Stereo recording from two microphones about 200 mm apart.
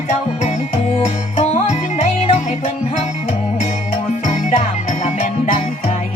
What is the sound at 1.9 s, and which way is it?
Music, 30° left (ahead or behind).